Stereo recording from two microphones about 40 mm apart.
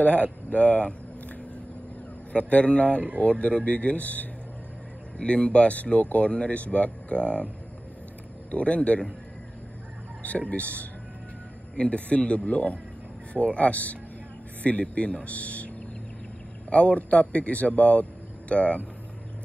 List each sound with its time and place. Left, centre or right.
0.0 s speech: left
2.3 s speech: left
5.1 s speech: left
10.2 s speech: left
16.7 s speech: left